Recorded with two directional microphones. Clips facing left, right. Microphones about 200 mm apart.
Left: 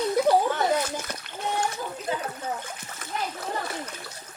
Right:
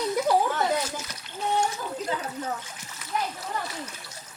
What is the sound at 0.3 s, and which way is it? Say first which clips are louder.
Children playing: left 2 dB; 65° left (ahead or behind).